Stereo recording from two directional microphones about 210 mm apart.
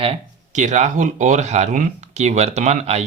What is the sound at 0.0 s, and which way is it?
Speech, 30° right (ahead or behind).